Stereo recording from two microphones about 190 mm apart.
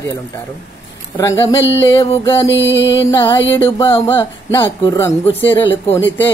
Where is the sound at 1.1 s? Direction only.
15° left (ahead or behind).